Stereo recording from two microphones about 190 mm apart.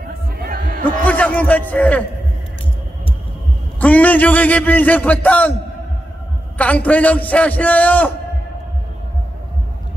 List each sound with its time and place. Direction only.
0.0 s chatter: 50° right (ahead or behind)
0.8 s a man's voice: 10° left (ahead or behind)
3.8 s a man's voice: 10° left (ahead or behind)
6.6 s a man's voice: 5° left (ahead or behind)